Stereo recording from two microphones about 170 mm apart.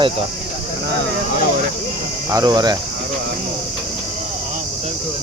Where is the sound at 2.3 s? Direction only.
20° right (ahead or behind).